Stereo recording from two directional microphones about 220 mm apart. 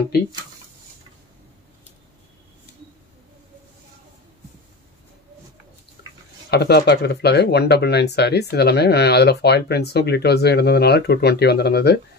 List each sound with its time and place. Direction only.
6.5 s speech: 50° left (ahead or behind)